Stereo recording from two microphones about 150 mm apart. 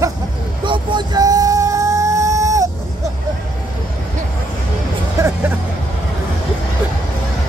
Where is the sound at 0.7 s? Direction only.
30° right (ahead or behind).